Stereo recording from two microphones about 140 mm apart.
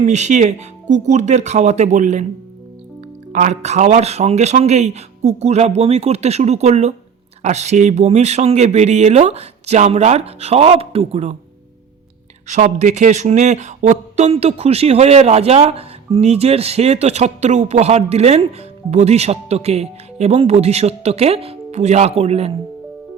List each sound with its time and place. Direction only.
0.0 s speech: 55° right (ahead or behind)
3.3 s speech: 55° right (ahead or behind)
12.5 s speech: 60° right (ahead or behind)